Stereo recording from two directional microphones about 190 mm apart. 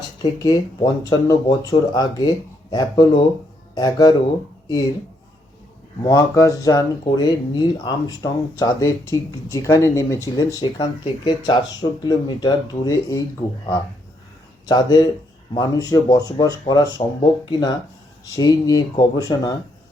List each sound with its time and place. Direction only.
0.2 s speech: 20° left (ahead or behind)
6.0 s speech: 20° left (ahead or behind)
14.7 s speech: 20° left (ahead or behind)